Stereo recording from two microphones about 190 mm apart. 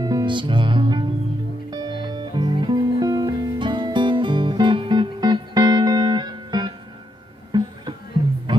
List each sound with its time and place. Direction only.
0.0 s music: 20° right (ahead or behind)